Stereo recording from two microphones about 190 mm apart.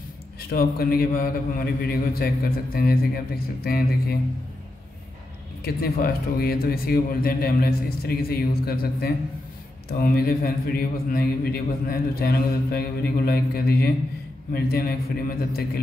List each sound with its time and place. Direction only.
0.5 s a man's voice: 50° left (ahead or behind)
5.6 s a man's voice: 50° left (ahead or behind)